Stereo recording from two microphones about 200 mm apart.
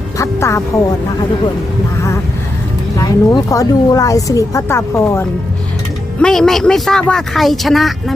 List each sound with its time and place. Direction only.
0.2 s speech: 15° left (ahead or behind)
3.0 s a woman's voice: 15° left (ahead or behind); by 8.1 s centre (ahead or behind)